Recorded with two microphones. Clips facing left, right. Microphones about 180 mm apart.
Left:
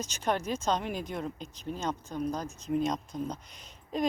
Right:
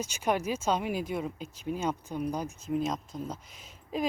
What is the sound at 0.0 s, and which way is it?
Speech, 10° right (ahead or behind).